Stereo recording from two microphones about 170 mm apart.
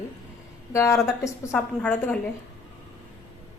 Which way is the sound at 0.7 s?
15° left (ahead or behind).